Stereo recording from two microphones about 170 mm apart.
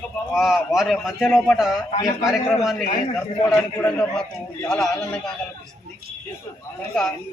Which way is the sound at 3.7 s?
5° left (ahead or behind).